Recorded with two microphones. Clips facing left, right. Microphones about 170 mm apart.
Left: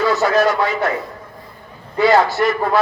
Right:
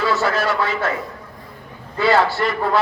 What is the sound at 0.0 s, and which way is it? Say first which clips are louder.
Speech: left 4 dB; 20° left (ahead or behind).